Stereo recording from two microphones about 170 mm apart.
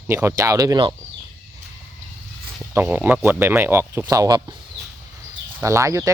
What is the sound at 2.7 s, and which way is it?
Speech, 10° right (ahead or behind).